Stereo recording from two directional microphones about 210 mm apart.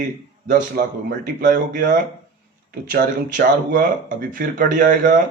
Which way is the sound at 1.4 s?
40° right (ahead or behind).